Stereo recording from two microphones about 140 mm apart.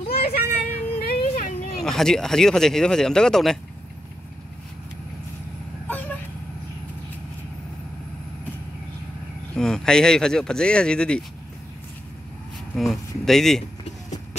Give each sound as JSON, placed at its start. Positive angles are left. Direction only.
{"t": 0.1, "sound": "children playing", "side_deg": 90}
{"t": 1.8, "sound": "speech", "side_deg": 5}
{"t": 9.6, "sound": "speech", "side_deg": 5}
{"t": 12.7, "sound": "speech", "side_deg": 0}